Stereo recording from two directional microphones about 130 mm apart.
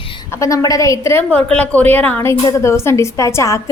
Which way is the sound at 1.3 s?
10° left (ahead or behind).